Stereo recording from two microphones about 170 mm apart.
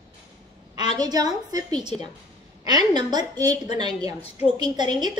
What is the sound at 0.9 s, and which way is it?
A woman's voice, 25° right (ahead or behind).